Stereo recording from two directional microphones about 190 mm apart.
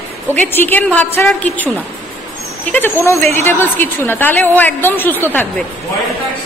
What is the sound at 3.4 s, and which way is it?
A woman's voice, 10° left (ahead or behind).